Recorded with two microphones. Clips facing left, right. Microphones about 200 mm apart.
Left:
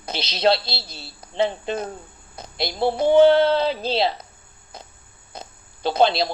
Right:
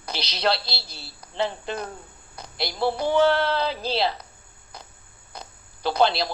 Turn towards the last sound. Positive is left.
turn(degrees=25)  # may be behind; listen again after turning